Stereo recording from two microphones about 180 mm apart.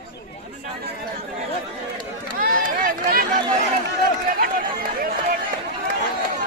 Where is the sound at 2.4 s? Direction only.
50° right (ahead or behind).